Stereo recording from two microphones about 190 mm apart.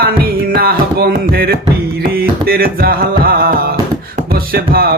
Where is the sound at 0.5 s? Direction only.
55° right (ahead or behind).